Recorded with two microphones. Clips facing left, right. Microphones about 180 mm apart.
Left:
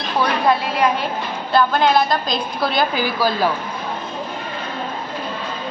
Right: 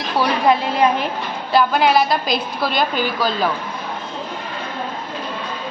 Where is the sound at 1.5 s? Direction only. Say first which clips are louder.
Even; 10° right (ahead or behind); by 3.4 s 5° left (ahead or behind).